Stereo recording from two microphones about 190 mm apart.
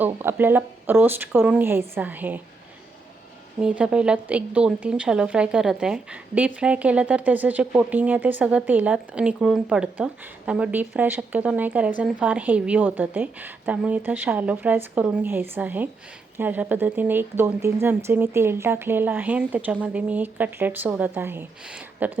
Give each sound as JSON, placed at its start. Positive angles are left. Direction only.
{"t": 0.0, "sound": "a woman's voice", "side_deg": -10}
{"t": 3.6, "sound": "a woman's voice", "side_deg": -5}